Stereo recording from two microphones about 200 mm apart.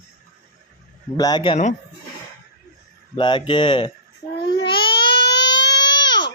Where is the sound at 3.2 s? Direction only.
25° left (ahead or behind).